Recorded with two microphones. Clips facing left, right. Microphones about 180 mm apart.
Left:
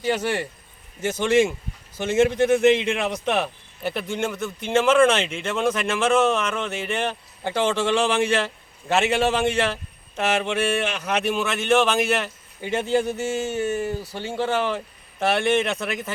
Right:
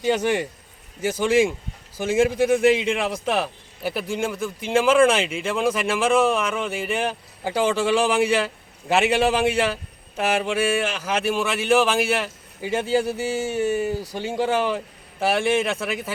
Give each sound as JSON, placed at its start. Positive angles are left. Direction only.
{"t": 0.0, "sound": "speech", "side_deg": -15}